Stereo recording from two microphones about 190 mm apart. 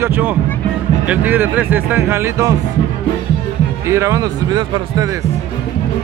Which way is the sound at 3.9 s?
15° right (ahead or behind).